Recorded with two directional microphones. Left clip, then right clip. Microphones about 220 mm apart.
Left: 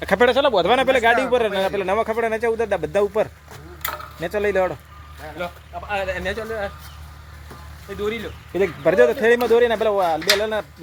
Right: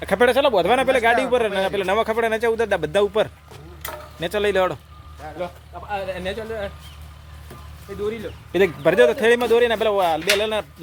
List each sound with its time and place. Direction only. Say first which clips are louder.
0.0 s speech: even; 5° left (ahead or behind)
5.2 s speech: right 1 dB; 45° left (ahead or behind)
6.1 s speech: left 2 dB; 5° left (ahead or behind)
8.5 s speech: even; 10° right (ahead or behind)